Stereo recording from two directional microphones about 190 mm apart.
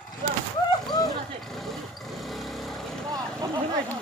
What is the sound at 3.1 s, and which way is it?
Vehicle, 20° right (ahead or behind).